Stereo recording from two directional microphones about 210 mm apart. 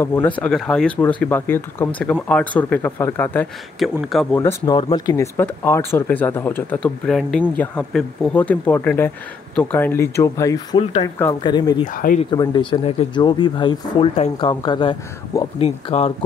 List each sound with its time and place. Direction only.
0.0 s speech: 10° left (ahead or behind)
4.4 s speech: 15° left (ahead or behind)
10.8 s speech: 30° left (ahead or behind)
11.1 s speech: 15° left (ahead or behind)
11.8 s speech: 40° left (ahead or behind)
12.3 s speech: 20° left (ahead or behind)